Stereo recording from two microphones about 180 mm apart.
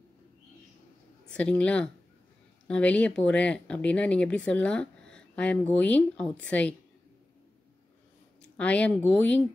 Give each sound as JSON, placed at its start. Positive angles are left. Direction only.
{"t": 1.2, "sound": "speech", "side_deg": 5}
{"t": 8.4, "sound": "speech", "side_deg": 5}